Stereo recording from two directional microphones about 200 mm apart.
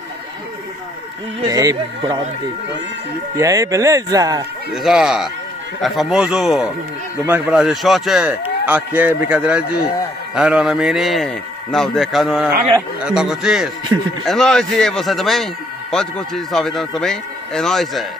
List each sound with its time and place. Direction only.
1.5 s speech: 20° right (ahead or behind)
3.3 s speech: 15° right (ahead or behind)
4.7 s speech: centre (ahead or behind)